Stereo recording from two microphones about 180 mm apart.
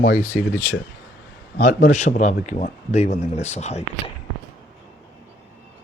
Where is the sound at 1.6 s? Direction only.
40° left (ahead or behind).